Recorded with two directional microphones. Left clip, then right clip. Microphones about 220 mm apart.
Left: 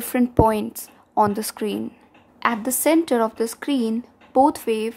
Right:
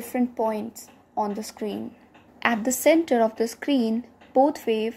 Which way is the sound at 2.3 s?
10° left (ahead or behind).